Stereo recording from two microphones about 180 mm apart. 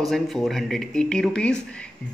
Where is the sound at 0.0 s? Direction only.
Centre (ahead or behind).